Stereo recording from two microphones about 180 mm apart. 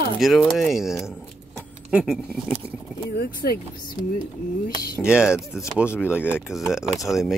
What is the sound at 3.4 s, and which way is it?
Speech, 60° left (ahead or behind).